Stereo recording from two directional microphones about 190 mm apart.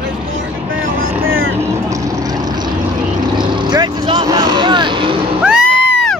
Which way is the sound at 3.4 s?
25° right (ahead or behind).